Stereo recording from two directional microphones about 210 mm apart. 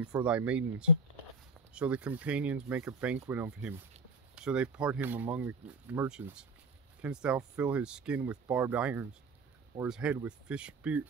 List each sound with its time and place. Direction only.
0.0 s speech: 5° right (ahead or behind)